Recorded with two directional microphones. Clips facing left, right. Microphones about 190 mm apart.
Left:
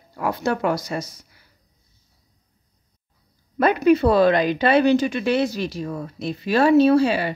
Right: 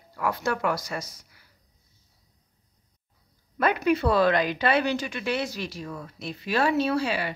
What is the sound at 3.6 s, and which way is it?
Speech, 30° left (ahead or behind).